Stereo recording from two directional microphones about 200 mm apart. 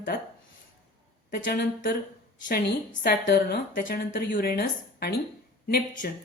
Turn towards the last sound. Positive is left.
turn(degrees=45)  # may be behind; listen again after turning